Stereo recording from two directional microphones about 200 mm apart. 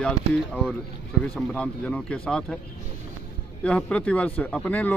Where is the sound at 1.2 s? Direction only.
5° left (ahead or behind).